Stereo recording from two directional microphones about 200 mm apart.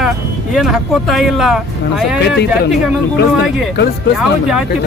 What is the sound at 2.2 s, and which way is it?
Speech, 55° left (ahead or behind).